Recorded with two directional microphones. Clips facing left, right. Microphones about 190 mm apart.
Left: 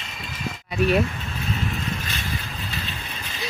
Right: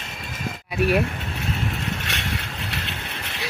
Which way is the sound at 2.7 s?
70° right (ahead or behind).